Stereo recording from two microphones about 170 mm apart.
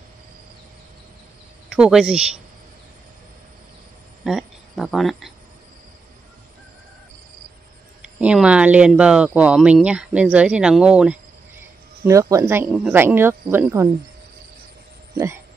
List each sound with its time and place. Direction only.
1.7 s speech: 5° right (ahead or behind)
4.2 s speech: centre (ahead or behind)
8.2 s speech: 5° right (ahead or behind)
12.0 s speech: 20° right (ahead or behind)
15.1 s speech: 15° right (ahead or behind)